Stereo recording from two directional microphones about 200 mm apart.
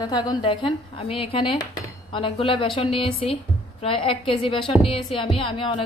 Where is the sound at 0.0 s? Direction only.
20° left (ahead or behind).